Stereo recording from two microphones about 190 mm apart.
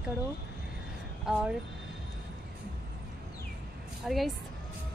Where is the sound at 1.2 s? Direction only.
5° right (ahead or behind).